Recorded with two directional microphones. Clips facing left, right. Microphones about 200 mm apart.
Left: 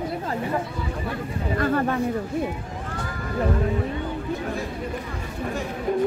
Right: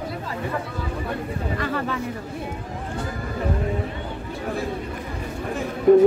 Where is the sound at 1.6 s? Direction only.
50° left (ahead or behind).